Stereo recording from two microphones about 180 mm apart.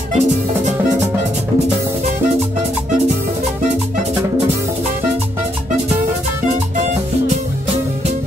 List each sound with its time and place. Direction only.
0.1 s music: 40° right (ahead or behind)